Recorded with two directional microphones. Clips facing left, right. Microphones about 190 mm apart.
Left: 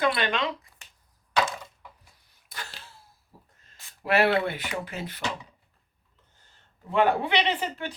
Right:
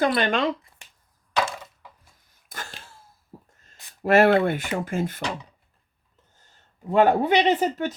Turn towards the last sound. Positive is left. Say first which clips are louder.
# right 8 dB
turn(degrees=-40)  # may be behind; listen again after turning